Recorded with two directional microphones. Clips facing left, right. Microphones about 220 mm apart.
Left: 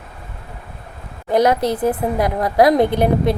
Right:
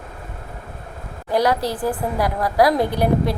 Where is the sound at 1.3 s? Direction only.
20° left (ahead or behind).